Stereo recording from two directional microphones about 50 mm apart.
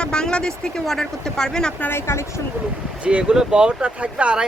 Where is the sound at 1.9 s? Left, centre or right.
Left.